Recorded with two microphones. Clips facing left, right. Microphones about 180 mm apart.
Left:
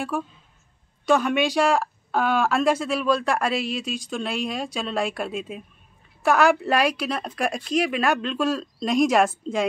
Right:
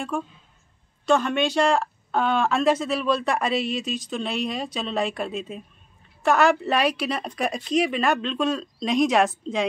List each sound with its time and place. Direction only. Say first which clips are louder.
1.0 s speech: left 1 dB; 10° left (ahead or behind)